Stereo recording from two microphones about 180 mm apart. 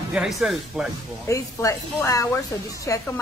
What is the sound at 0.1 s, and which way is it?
Speech, centre (ahead or behind).